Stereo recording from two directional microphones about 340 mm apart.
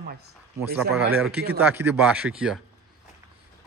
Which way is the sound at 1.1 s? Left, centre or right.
Centre.